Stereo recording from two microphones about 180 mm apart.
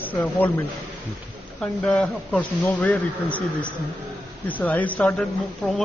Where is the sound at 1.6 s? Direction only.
5° left (ahead or behind).